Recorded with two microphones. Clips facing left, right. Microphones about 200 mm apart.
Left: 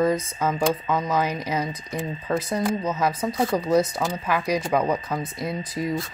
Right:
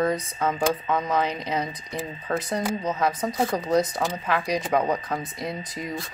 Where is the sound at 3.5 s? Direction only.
15° right (ahead or behind).